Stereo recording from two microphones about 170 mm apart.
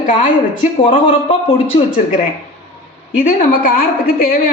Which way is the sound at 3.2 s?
55° left (ahead or behind).